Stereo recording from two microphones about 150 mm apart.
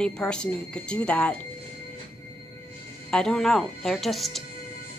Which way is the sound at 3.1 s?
5° left (ahead or behind).